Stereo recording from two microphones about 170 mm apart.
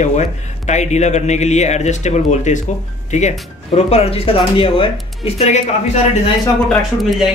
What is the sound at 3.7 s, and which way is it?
Speech, 35° left (ahead or behind).